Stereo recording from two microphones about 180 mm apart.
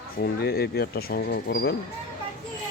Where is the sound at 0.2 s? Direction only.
60° left (ahead or behind).